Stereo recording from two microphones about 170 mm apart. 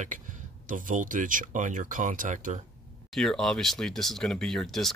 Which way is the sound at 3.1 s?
Centre (ahead or behind).